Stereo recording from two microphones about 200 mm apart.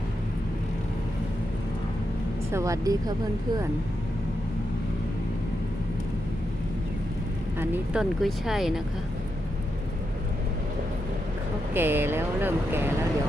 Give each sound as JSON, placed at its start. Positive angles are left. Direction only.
{"t": 2.5, "sound": "speech", "side_deg": -15}
{"t": 7.6, "sound": "speech", "side_deg": -10}
{"t": 11.7, "sound": "speech", "side_deg": -10}